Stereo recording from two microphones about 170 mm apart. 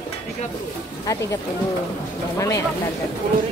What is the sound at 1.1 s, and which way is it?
Speech, 20° left (ahead or behind).